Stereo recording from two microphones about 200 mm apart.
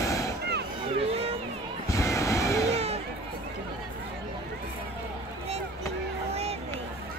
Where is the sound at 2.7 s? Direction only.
30° right (ahead or behind).